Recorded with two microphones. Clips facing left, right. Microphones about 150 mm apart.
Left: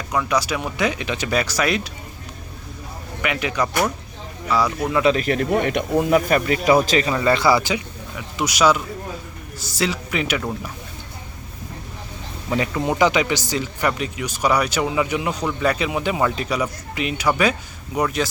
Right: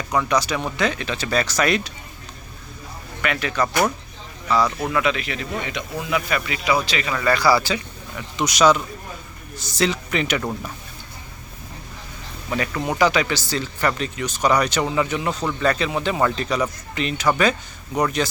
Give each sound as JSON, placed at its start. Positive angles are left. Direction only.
{"t": 0.1, "sound": "speech", "side_deg": 5}
{"t": 3.2, "sound": "speech", "side_deg": 15}
{"t": 5.0, "sound": "speech", "side_deg": 40}
{"t": 7.1, "sound": "speech", "side_deg": 25}
{"t": 8.1, "sound": "speech", "side_deg": 5}
{"t": 12.5, "sound": "speech", "side_deg": 20}